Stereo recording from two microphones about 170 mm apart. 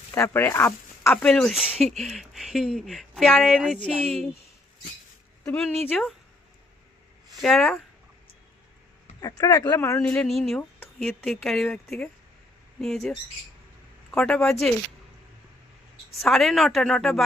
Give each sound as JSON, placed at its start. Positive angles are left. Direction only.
{"t": 0.1, "sound": "speech", "side_deg": 15}
{"t": 5.5, "sound": "speech", "side_deg": 5}
{"t": 7.3, "sound": "speech", "side_deg": 0}
{"t": 9.2, "sound": "speech", "side_deg": 20}
{"t": 10.0, "sound": "speech", "side_deg": 5}
{"t": 16.1, "sound": "speech", "side_deg": 0}